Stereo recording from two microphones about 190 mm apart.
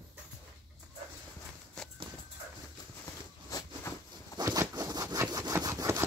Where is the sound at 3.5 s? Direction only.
20° left (ahead or behind).